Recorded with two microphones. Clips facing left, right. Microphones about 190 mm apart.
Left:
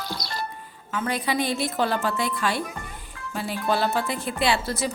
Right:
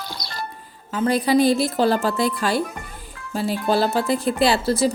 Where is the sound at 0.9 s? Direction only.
35° right (ahead or behind).